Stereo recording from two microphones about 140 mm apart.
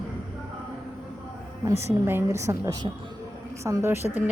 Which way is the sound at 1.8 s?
15° right (ahead or behind).